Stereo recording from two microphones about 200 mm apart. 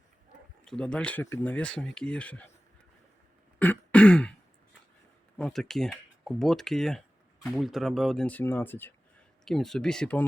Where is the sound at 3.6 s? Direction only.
5° left (ahead or behind).